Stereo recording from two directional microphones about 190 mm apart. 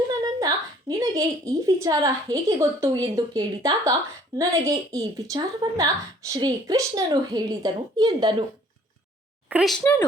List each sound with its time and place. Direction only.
0.2 s a woman's voice: 20° right (ahead or behind)
9.5 s speech: centre (ahead or behind)
9.8 s speech: 10° left (ahead or behind)